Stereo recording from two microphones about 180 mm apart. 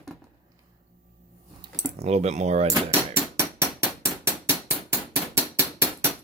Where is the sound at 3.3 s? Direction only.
15° right (ahead or behind).